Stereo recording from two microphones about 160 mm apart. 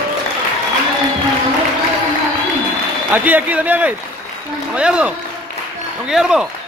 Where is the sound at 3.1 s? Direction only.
10° right (ahead or behind).